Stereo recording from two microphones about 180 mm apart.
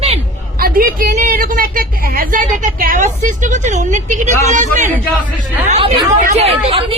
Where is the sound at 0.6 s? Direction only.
55° right (ahead or behind); by 6.8 s 30° right (ahead or behind).